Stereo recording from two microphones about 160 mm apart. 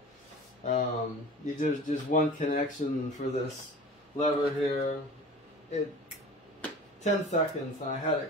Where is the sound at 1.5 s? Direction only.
55° left (ahead or behind).